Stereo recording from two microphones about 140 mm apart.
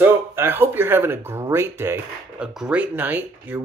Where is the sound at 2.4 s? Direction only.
5° right (ahead or behind).